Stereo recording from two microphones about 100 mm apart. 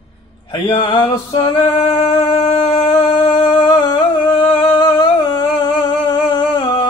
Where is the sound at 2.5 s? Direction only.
60° left (ahead or behind).